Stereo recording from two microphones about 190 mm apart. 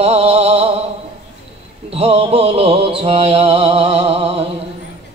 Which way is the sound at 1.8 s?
30° right (ahead or behind).